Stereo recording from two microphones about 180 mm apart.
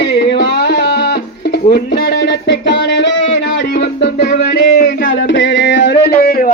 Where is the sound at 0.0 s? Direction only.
65° left (ahead or behind).